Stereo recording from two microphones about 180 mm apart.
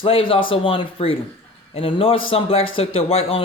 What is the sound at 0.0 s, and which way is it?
Speech, 30° left (ahead or behind).